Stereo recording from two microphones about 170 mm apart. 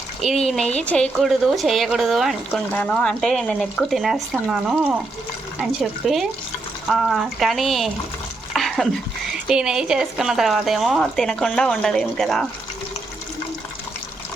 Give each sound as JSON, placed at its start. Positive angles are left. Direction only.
{"t": 0.2, "sound": "speech", "side_deg": 0}
{"t": 8.5, "sound": "dog", "side_deg": 0}
{"t": 9.5, "sound": "speech", "side_deg": -5}